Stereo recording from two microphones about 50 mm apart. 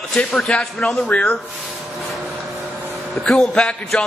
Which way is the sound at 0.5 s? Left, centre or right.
Centre.